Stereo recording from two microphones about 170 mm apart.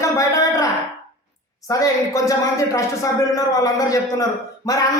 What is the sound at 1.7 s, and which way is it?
A man's voice, 20° left (ahead or behind).